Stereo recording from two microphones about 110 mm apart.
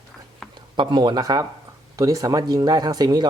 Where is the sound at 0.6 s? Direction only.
45° right (ahead or behind).